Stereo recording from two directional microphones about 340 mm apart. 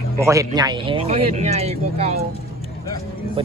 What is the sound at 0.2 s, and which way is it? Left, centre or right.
Speech, centre.